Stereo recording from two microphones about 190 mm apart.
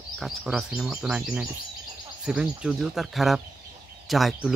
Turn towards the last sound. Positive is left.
turn(degrees=0)  # may be behind; listen again after turning